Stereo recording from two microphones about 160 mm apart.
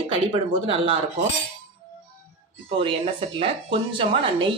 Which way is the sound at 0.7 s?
35° right (ahead or behind).